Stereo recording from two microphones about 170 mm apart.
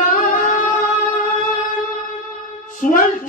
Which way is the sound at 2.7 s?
55° left (ahead or behind).